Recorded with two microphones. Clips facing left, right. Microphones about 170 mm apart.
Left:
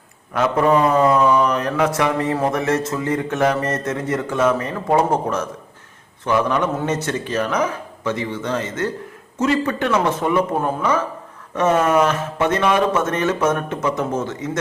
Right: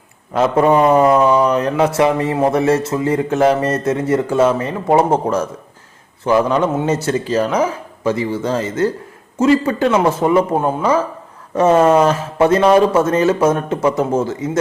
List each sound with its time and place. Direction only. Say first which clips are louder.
0.3 s a man's voice: right 4 dB; 30° right (ahead or behind)